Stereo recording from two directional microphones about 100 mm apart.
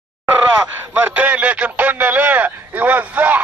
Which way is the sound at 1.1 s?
15° right (ahead or behind).